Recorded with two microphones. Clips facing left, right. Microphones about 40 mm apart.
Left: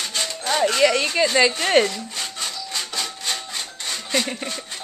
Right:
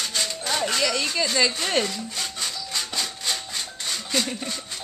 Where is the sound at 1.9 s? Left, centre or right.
Centre.